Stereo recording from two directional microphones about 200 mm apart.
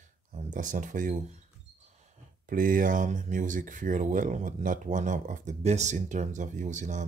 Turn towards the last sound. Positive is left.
turn(degrees=-35)  # may be behind; listen again after turning